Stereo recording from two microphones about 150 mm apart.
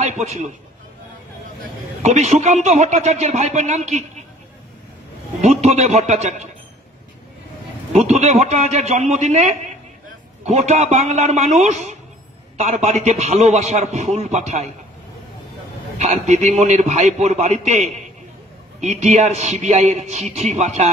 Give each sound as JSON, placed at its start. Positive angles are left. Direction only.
{"t": 0.0, "sound": "a man's voice", "side_deg": -50}
{"t": 2.0, "sound": "a man's voice", "side_deg": -50}
{"t": 5.4, "sound": "a man's voice", "side_deg": -50}
{"t": 7.9, "sound": "a man's voice", "side_deg": -50}
{"t": 16.0, "sound": "a man's voice", "side_deg": -50}